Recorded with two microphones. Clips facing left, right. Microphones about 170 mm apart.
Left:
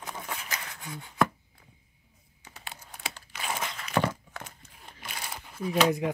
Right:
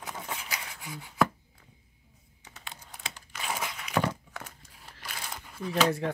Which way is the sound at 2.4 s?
10° left (ahead or behind).